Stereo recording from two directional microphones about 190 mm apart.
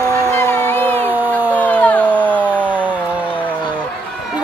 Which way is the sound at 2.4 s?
10° right (ahead or behind).